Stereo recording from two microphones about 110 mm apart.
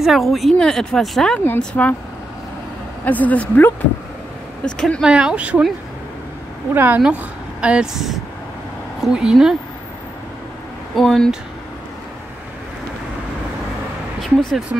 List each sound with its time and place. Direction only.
0.0 s a woman's voice: centre (ahead or behind)
3.1 s a woman's voice: 15° left (ahead or behind)
5.0 s speech: 10° right (ahead or behind)
6.7 s speech: 20° right (ahead or behind)
11.0 s speech: centre (ahead or behind)
14.2 s speech: 5° left (ahead or behind)